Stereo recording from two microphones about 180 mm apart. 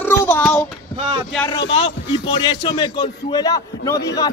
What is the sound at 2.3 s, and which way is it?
A man's voice, 25° left (ahead or behind).